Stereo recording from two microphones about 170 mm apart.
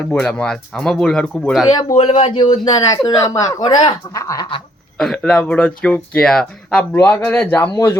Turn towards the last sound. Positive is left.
turn(degrees=15)  # may be behind; listen again after turning